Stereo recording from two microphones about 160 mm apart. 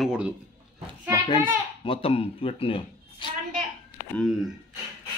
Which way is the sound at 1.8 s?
35° left (ahead or behind).